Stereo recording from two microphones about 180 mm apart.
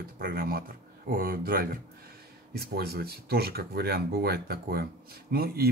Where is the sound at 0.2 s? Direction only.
55° right (ahead or behind).